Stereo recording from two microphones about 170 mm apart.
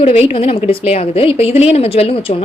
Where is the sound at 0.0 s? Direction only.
35° left (ahead or behind).